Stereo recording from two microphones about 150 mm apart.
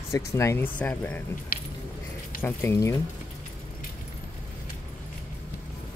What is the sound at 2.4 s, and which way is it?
Speech, 15° left (ahead or behind).